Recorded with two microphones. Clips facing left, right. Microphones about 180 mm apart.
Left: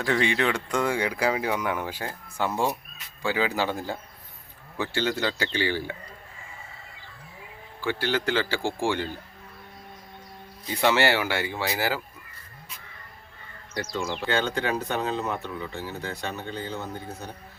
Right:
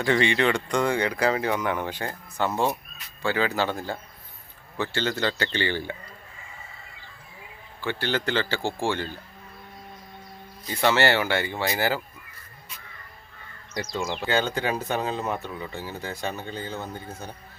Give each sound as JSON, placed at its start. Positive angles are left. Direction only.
{"t": 0.0, "sound": "a man's voice", "side_deg": 0}
{"t": 7.9, "sound": "a man's voice", "side_deg": 5}
{"t": 10.8, "sound": "a man's voice", "side_deg": 10}
{"t": 14.3, "sound": "speech", "side_deg": -5}